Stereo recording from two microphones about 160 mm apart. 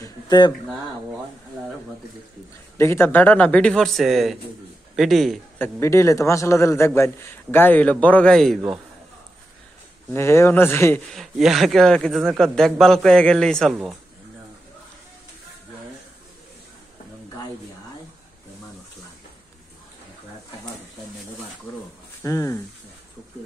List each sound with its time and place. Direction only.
0.0 s speech: 25° left (ahead or behind)
2.8 s speech: 15° left (ahead or behind)
5.6 s speech: 20° left (ahead or behind)
10.1 s speech: 15° left (ahead or behind)
11.1 s speech: centre (ahead or behind)
22.2 s speech: 20° left (ahead or behind)